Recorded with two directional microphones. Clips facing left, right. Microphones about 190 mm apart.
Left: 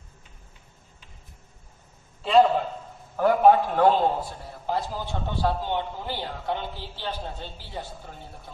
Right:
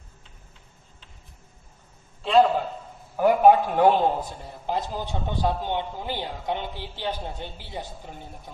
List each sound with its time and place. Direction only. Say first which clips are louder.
2.2 s a man's voice: even; centre (ahead or behind)
3.2 s a man's voice: right 1 dB; 10° right (ahead or behind)